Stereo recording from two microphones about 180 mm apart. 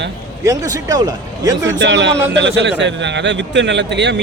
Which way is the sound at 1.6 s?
75° right (ahead or behind).